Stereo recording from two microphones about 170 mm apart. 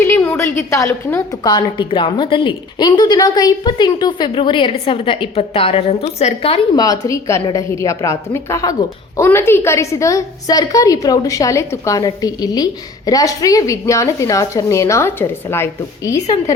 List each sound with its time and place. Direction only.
0.0 s a woman's voice: 10° left (ahead or behind)
1.5 s a woman's voice: 30° left (ahead or behind)
6.7 s a woman's voice: 20° left (ahead or behind)